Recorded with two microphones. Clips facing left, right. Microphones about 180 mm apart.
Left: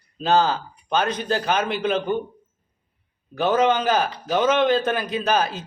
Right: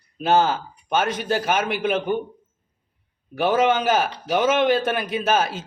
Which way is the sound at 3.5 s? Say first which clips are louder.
Even; 20° right (ahead or behind).